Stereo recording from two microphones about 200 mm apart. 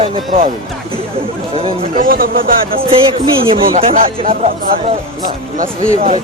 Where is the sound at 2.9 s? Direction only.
30° right (ahead or behind).